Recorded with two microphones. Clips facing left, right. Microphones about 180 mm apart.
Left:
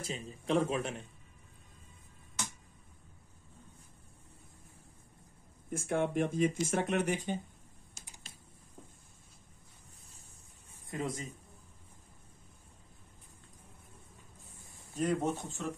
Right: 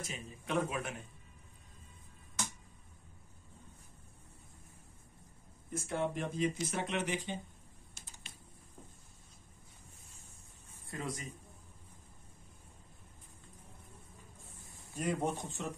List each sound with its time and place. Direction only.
0.0 s a man's voice: 30° left (ahead or behind)
5.7 s speech: 50° left (ahead or behind)
10.9 s speech: 25° left (ahead or behind)
15.0 s speech: 10° right (ahead or behind)